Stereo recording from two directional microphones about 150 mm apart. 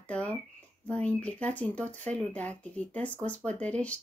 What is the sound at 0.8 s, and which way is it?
Speech, 10° left (ahead or behind).